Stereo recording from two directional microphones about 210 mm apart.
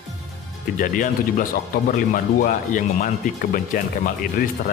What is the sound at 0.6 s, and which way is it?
Speech, 40° left (ahead or behind).